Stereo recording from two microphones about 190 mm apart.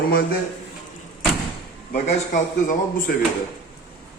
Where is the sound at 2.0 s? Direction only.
40° left (ahead or behind).